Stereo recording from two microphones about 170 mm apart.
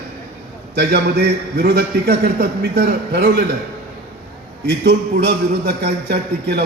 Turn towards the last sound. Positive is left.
turn(degrees=-70)  # may be behind; listen again after turning